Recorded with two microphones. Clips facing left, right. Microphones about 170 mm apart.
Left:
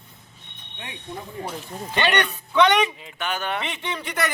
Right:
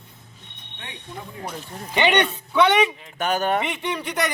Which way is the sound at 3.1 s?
40° right (ahead or behind).